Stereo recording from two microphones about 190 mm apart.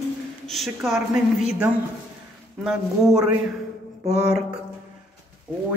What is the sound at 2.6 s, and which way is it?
Speech, 5° right (ahead or behind).